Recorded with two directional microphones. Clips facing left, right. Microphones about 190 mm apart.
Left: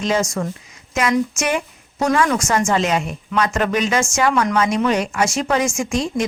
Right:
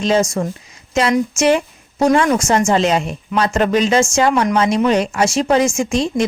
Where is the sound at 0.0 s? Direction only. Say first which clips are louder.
Right 4 dB; 30° right (ahead or behind).